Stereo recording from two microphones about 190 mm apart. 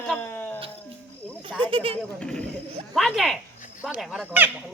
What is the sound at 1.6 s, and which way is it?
Speech, 30° right (ahead or behind).